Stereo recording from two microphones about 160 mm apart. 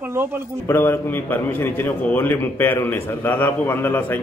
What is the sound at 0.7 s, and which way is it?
A man's voice, 15° left (ahead or behind).